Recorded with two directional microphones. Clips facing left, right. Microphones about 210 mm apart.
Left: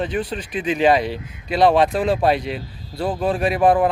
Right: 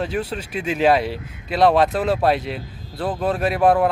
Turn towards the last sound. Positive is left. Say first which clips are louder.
# left 1 dB
turn(degrees=5)  # may be behind; listen again after turning